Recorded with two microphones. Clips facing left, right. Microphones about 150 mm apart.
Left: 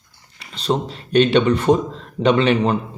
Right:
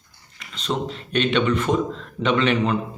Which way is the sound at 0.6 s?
35° left (ahead or behind).